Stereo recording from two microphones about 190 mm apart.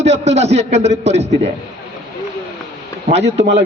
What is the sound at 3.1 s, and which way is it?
Speech, 35° right (ahead or behind).